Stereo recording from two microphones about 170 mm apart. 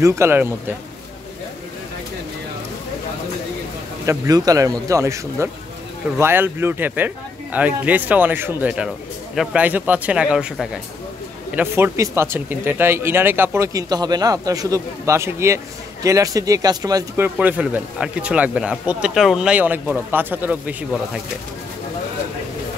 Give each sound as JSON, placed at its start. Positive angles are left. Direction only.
{"t": 0.0, "sound": "speech", "side_deg": -15}
{"t": 4.0, "sound": "speech", "side_deg": -20}
{"t": 17.4, "sound": "speech", "side_deg": -10}